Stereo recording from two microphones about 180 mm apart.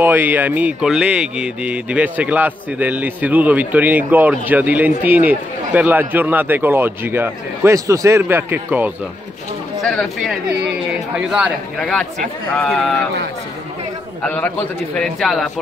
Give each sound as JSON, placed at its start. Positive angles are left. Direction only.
{"t": 0.0, "sound": "speech", "side_deg": -10}
{"t": 9.8, "sound": "speech", "side_deg": 0}
{"t": 14.2, "sound": "a man's voice", "side_deg": 10}